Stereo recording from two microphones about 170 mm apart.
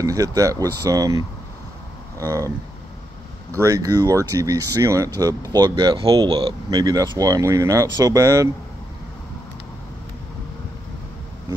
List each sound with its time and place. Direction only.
0.0 s speech: 20° right (ahead or behind)
3.5 s speech: 20° right (ahead or behind)